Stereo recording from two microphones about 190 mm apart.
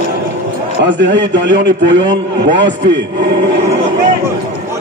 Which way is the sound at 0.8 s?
70° right (ahead or behind).